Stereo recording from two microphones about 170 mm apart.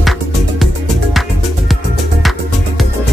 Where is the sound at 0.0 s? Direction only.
Centre (ahead or behind).